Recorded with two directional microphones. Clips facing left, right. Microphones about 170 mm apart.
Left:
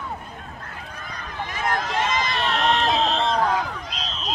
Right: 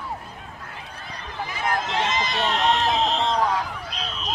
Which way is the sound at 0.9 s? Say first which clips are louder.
Left 1 dB; 30° right (ahead or behind).